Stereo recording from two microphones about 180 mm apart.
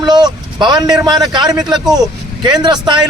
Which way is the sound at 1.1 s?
25° right (ahead or behind).